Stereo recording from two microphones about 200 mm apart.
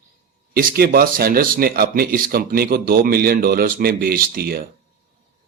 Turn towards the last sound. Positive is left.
turn(degrees=-50)  # may be behind; listen again after turning